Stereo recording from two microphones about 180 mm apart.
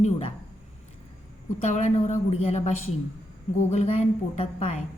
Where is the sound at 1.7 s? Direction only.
40° left (ahead or behind).